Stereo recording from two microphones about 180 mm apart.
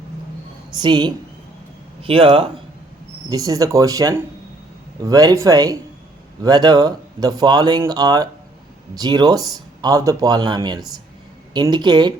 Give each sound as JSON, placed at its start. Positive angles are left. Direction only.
{"t": 0.7, "sound": "speech", "side_deg": -25}
{"t": 3.2, "sound": "speech", "side_deg": -20}